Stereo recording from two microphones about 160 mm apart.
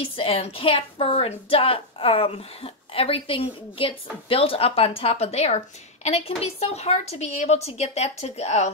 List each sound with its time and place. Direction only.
0.0 s a woman's voice: 35° left (ahead or behind)